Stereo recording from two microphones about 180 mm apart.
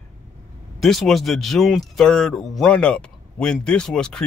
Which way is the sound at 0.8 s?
Centre (ahead or behind).